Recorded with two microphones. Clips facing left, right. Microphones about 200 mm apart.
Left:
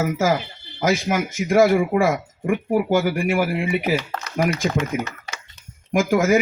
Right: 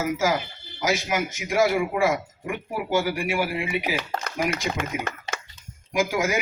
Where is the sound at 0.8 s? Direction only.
50° left (ahead or behind).